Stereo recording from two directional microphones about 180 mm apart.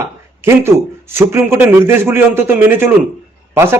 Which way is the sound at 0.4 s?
15° right (ahead or behind).